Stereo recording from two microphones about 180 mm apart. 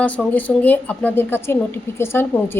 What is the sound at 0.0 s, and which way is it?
A woman's voice, 10° left (ahead or behind).